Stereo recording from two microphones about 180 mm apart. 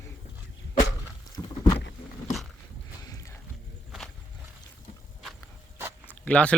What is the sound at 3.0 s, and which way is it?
Boat, 20° left (ahead or behind).